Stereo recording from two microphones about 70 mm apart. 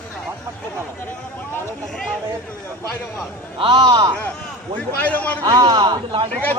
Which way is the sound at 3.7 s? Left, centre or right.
Right.